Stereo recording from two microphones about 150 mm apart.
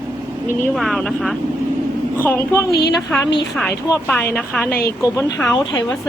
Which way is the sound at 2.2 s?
15° left (ahead or behind).